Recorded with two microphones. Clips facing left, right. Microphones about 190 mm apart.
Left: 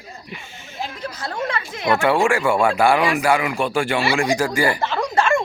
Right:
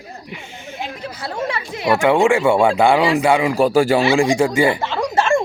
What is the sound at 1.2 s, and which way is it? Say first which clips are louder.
Speech: right 2 dB; 10° right (ahead or behind).